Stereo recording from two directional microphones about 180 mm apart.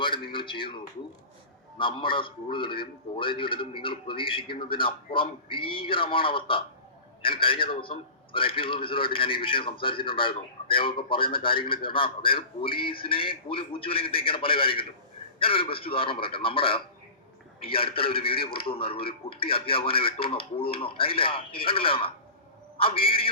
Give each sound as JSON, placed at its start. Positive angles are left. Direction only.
{"t": 0.0, "sound": "a man's voice", "side_deg": 25}
{"t": 1.8, "sound": "a man's voice", "side_deg": 25}